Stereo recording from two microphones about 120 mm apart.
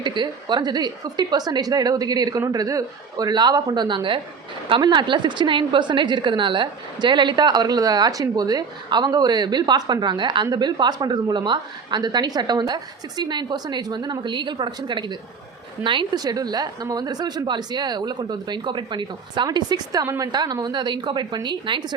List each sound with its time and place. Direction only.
0.0 s a woman's voice: 40° right (ahead or behind)